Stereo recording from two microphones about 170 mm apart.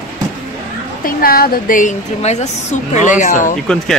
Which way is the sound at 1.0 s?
60° left (ahead or behind).